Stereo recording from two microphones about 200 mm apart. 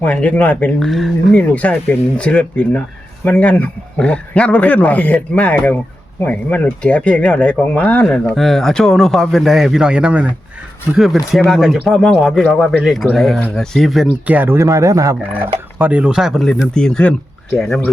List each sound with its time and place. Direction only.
0.0 s speech: 5° left (ahead or behind)